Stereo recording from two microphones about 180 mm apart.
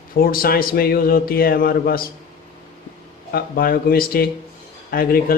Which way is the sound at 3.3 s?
60° left (ahead or behind).